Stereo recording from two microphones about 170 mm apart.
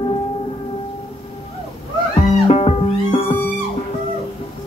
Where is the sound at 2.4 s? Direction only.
35° left (ahead or behind).